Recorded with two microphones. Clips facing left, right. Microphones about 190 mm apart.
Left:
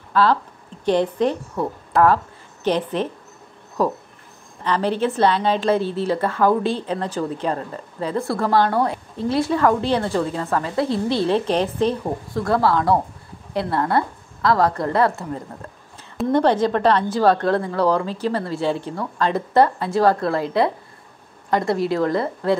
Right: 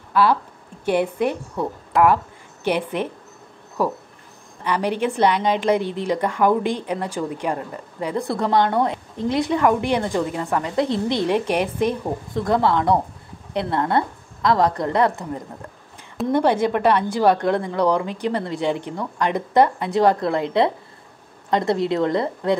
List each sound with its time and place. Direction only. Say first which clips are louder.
0.1 s a woman's voice: even; 10° right (ahead or behind)